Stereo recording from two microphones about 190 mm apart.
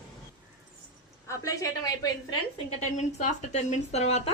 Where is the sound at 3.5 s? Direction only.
35° left (ahead or behind).